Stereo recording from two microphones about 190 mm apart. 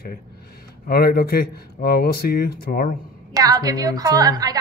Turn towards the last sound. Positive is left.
turn(degrees=-20)  # may be behind; listen again after turning